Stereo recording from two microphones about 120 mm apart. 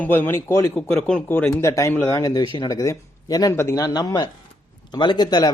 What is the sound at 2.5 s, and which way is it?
Speech, 40° left (ahead or behind).